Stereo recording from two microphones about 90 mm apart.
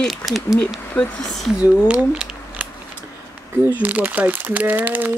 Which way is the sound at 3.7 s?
15° right (ahead or behind).